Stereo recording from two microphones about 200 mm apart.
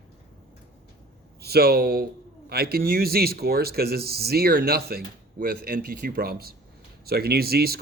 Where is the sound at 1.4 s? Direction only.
50° right (ahead or behind).